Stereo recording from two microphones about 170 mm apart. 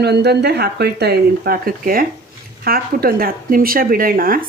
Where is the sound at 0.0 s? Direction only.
75° right (ahead or behind).